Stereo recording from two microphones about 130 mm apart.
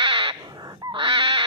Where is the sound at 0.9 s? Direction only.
40° right (ahead or behind).